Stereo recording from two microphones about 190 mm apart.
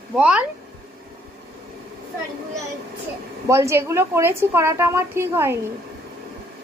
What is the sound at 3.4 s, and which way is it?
A woman's voice, 15° right (ahead or behind).